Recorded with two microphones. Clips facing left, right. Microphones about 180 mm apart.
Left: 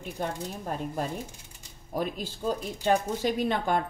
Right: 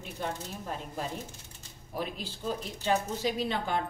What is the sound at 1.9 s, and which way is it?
Speech, 45° left (ahead or behind).